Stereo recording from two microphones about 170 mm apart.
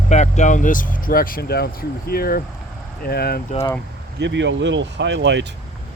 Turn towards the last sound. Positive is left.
turn(degrees=-90)